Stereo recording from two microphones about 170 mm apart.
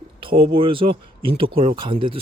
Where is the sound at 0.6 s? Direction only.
30° right (ahead or behind).